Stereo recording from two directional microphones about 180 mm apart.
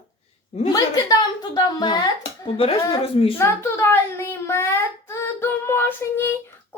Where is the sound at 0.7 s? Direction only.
20° left (ahead or behind).